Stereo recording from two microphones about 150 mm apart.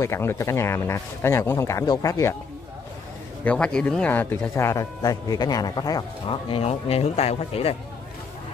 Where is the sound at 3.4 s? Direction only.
5° left (ahead or behind); by 7.7 s 40° left (ahead or behind).